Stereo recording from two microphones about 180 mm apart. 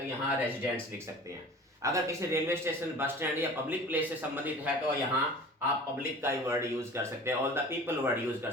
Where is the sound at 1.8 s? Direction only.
15° right (ahead or behind).